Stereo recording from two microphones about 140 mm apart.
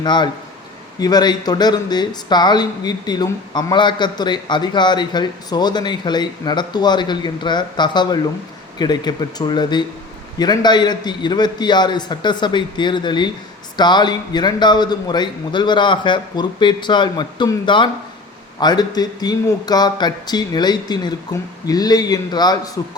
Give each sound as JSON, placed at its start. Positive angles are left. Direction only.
{"t": 0.0, "sound": "speech", "side_deg": 30}